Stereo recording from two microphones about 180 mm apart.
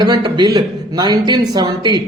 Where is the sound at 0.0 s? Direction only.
20° right (ahead or behind).